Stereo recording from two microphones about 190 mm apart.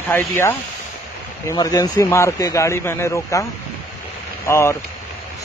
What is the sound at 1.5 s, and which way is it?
Speech, 20° left (ahead or behind).